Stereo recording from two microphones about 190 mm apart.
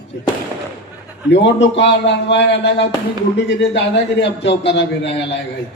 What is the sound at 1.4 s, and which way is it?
A man's voice, 70° left (ahead or behind).